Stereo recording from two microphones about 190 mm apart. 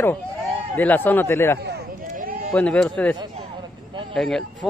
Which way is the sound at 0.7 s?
10° left (ahead or behind).